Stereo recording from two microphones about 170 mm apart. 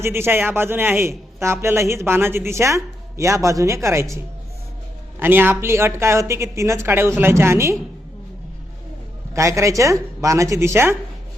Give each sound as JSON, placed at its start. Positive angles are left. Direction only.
{"t": 0.0, "sound": "speech", "side_deg": -15}
{"t": 5.2, "sound": "speech", "side_deg": -10}
{"t": 9.3, "sound": "speech", "side_deg": -15}